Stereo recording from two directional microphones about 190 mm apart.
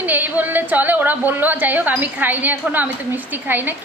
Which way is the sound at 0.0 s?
10° right (ahead or behind).